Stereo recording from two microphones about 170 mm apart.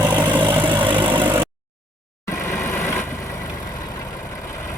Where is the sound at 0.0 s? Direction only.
10° right (ahead or behind).